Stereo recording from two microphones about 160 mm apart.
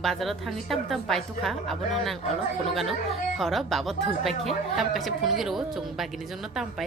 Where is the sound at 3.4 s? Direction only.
Centre (ahead or behind).